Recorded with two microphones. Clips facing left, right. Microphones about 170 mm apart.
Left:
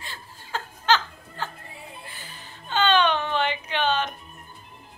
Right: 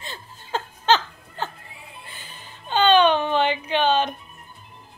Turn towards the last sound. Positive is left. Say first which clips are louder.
# right 5 dB
turn(degrees=-15)  # may be behind; listen again after turning